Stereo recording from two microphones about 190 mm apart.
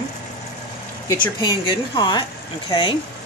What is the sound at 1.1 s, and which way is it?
Speech, 25° left (ahead or behind).